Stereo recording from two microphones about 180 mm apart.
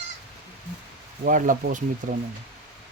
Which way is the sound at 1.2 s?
45° right (ahead or behind).